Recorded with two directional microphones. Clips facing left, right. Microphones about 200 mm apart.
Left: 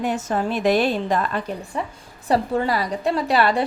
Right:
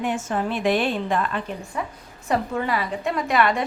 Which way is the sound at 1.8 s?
30° left (ahead or behind).